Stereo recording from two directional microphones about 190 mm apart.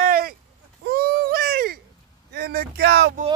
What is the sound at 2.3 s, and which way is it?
Speech, 60° right (ahead or behind).